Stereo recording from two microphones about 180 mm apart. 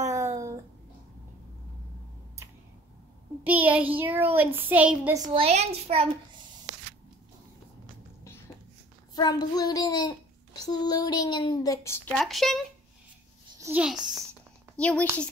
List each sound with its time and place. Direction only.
0.0 s a sound: 15° right (ahead or behind)
3.4 s a child's voice: 10° right (ahead or behind)
5.1 s a woman's voice: 20° right (ahead or behind)
5.4 s a child's voice: 35° right (ahead or behind)
7.8 s a sound: 15° left (ahead or behind)
9.1 s a child's voice: 20° left (ahead or behind)
12.1 s a child's voice: centre (ahead or behind)
13.6 s a child's voice: 10° right (ahead or behind)
14.8 s a child's voice: 5° left (ahead or behind)